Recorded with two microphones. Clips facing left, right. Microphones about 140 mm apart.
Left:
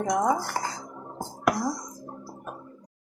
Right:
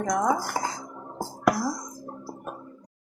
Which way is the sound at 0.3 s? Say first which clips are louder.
Even; 10° right (ahead or behind).